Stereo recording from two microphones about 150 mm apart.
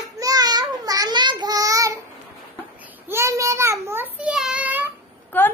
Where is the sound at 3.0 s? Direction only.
20° right (ahead or behind).